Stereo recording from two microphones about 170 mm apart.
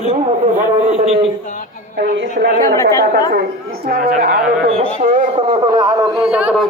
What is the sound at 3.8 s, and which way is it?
Speech, 65° right (ahead or behind).